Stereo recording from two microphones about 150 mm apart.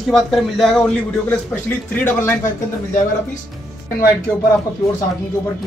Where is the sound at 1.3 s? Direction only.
15° left (ahead or behind).